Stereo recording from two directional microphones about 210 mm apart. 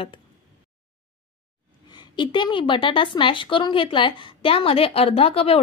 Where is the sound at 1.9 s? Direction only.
20° left (ahead or behind).